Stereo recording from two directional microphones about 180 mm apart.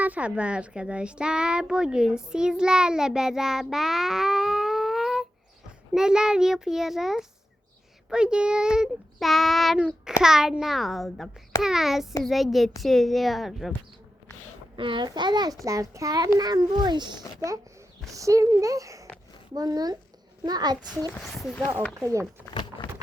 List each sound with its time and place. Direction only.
0.0 s speech: 10° right (ahead or behind)
14.8 s a child's voice: 25° right (ahead or behind)
21.2 s speech: centre (ahead or behind)
21.9 s speech: 15° right (ahead or behind)
22.8 s a sound: 25° left (ahead or behind)